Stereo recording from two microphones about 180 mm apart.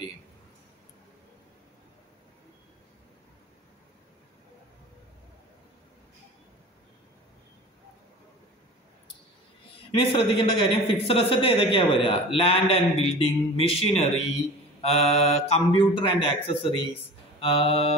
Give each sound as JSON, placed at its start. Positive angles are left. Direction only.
{"t": 9.8, "sound": "speech", "side_deg": 30}